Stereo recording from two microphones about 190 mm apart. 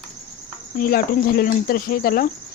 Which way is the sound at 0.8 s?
50° left (ahead or behind).